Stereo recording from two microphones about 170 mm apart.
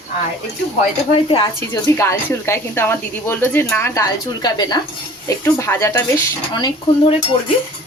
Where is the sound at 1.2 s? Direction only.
30° left (ahead or behind).